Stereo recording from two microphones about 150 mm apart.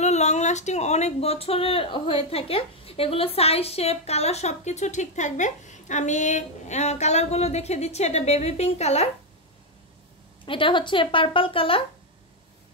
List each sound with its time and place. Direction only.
0.0 s speech: 50° left (ahead or behind)
10.4 s speech: 35° left (ahead or behind)